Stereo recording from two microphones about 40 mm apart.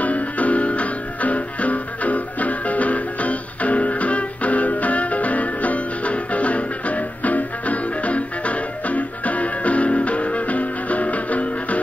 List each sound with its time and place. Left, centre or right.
0.0 s music: left